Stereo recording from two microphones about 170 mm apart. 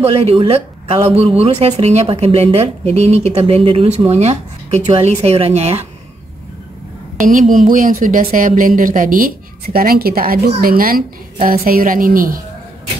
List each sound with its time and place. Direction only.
0.0 s speech: 35° right (ahead or behind)
7.7 s a woman's voice: 55° right (ahead or behind)